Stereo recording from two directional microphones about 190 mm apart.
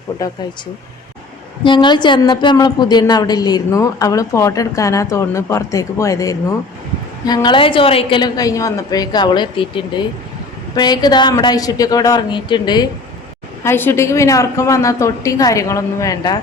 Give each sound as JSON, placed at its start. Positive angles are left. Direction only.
{"t": 0.2, "sound": "a woman's voice", "side_deg": 20}
{"t": 1.6, "sound": "a woman's voice", "side_deg": 25}
{"t": 13.7, "sound": "a woman's voice", "side_deg": 10}